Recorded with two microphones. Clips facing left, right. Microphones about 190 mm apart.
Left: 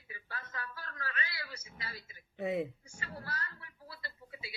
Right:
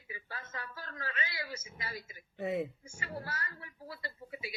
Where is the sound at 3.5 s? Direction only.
15° right (ahead or behind).